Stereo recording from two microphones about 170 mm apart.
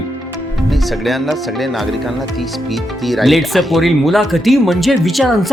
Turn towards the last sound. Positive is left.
turn(degrees=0)  # may be behind; listen again after turning